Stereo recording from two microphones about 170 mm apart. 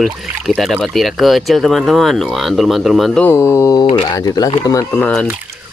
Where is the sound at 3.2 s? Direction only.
15° left (ahead or behind).